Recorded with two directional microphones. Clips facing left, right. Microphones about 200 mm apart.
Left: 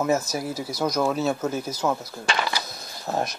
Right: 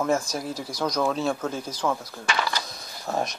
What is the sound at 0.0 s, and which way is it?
Speech, 5° left (ahead or behind).